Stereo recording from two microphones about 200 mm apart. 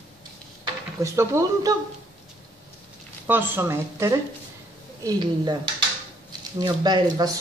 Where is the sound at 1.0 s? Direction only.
15° right (ahead or behind).